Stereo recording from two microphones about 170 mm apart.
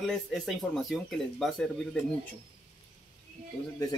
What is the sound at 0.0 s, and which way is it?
Speech, centre (ahead or behind).